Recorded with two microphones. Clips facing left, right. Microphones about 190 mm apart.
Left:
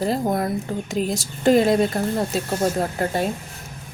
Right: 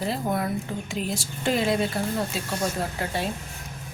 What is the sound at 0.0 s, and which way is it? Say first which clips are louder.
Speech: left 5 dB; 40° left (ahead or behind).